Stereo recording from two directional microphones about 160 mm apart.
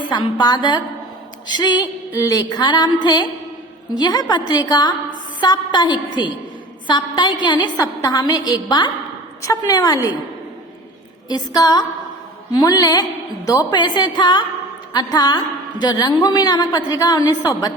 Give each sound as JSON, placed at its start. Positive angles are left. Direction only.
{"t": 0.1, "sound": "a woman's voice", "side_deg": 25}
{"t": 11.3, "sound": "a woman's voice", "side_deg": 25}